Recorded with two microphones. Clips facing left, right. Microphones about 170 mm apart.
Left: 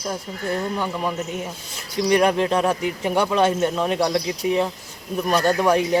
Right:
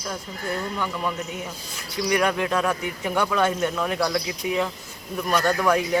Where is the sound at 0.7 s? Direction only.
30° left (ahead or behind).